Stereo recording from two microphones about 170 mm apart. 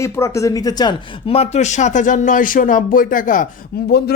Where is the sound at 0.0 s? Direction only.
15° left (ahead or behind); by 3.9 s 50° left (ahead or behind).